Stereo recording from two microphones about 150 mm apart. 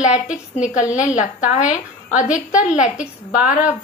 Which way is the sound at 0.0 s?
55° left (ahead or behind).